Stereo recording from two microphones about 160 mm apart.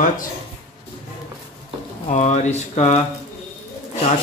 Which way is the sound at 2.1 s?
45° left (ahead or behind).